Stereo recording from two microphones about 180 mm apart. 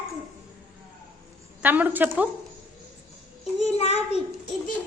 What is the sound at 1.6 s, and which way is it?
Speech, 10° right (ahead or behind).